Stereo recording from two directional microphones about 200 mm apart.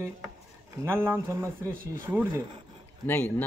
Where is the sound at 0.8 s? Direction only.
10° right (ahead or behind).